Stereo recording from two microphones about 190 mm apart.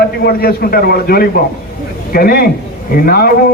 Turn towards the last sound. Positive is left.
turn(degrees=50)  # may be behind; listen again after turning